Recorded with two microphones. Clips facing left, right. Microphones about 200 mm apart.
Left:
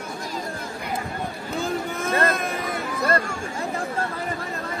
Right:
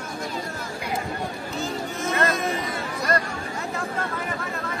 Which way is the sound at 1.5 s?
55° left (ahead or behind).